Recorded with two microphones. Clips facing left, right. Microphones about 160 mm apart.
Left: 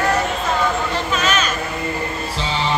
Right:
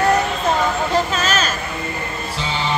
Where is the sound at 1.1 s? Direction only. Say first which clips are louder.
Left 1 dB; 40° right (ahead or behind).